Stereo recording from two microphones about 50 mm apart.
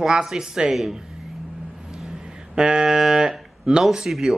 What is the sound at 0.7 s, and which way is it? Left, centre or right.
Speech, centre.